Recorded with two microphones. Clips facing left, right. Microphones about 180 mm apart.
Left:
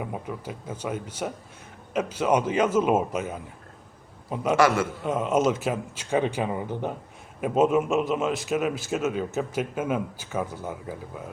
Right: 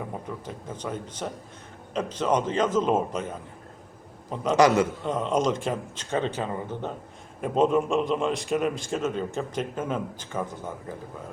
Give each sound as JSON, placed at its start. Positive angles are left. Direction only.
{"t": 0.0, "sound": "a man's voice", "side_deg": 10}
{"t": 4.5, "sound": "a man's voice", "side_deg": -20}
{"t": 5.0, "sound": "a man's voice", "side_deg": 5}